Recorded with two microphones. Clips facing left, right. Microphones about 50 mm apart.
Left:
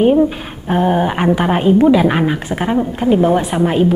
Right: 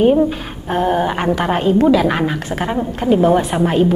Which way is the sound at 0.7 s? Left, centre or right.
Centre.